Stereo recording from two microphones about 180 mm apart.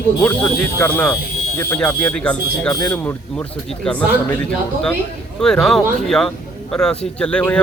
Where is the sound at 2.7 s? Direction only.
15° left (ahead or behind).